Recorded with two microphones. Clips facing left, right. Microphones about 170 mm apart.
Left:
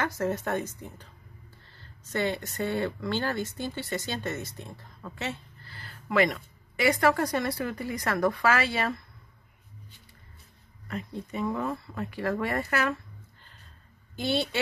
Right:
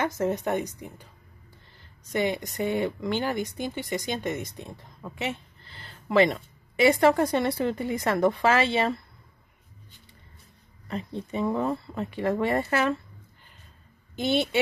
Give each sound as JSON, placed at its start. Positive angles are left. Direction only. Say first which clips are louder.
{"t": 0.0, "sound": "speech", "louder": "right 3 dB", "side_deg": -20}
{"t": 10.9, "sound": "speech", "louder": "right 3 dB", "side_deg": -25}
{"t": 14.1, "sound": "speech", "louder": "right 3 dB", "side_deg": -20}